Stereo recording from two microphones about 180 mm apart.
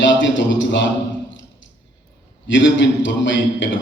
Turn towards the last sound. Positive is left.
turn(degrees=90)